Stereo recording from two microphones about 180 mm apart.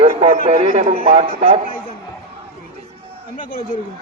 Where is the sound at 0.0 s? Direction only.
35° right (ahead or behind).